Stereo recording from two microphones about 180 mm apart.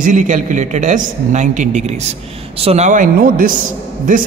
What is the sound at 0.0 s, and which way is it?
A man's voice, 45° right (ahead or behind).